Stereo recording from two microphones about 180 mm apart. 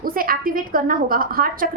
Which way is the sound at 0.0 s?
55° right (ahead or behind).